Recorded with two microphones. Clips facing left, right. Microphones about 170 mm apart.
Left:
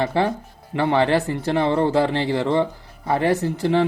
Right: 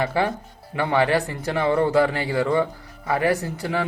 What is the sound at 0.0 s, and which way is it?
Speech, 30° left (ahead or behind).